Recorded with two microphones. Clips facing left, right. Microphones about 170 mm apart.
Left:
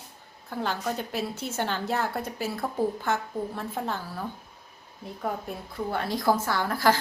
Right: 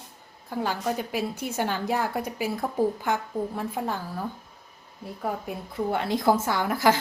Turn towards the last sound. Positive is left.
turn(degrees=-20)  # may be behind; listen again after turning